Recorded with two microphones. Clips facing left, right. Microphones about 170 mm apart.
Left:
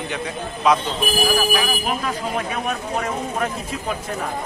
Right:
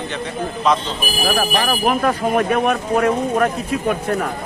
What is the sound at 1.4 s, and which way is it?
Speech, 55° right (ahead or behind).